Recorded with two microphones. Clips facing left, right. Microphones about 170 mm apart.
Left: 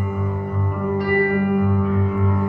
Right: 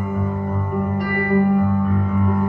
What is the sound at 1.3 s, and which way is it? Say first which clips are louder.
Music: right 3 dB; 25° right (ahead or behind).